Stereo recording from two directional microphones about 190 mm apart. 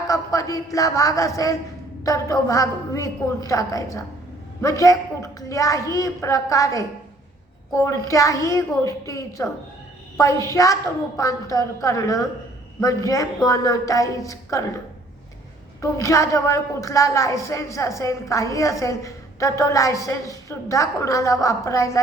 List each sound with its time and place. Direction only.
0.1 s speech: 15° left (ahead or behind)
10.5 s speech: 15° left (ahead or behind)
15.8 s speech: 15° left (ahead or behind)